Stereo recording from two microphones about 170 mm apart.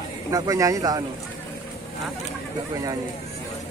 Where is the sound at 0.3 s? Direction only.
20° right (ahead or behind).